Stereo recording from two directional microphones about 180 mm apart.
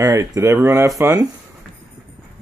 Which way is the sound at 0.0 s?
20° right (ahead or behind).